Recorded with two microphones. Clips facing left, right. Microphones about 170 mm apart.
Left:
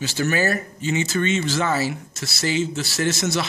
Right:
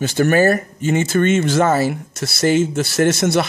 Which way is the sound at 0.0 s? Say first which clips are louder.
Right 8 dB; 55° right (ahead or behind).